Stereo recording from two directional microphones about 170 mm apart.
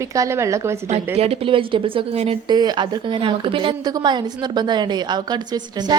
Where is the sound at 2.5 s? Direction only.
25° right (ahead or behind).